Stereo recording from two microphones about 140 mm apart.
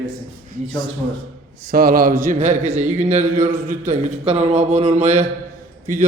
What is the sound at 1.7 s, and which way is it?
A man's voice, 90° right.